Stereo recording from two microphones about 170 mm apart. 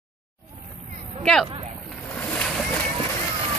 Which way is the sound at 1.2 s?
5° left (ahead or behind).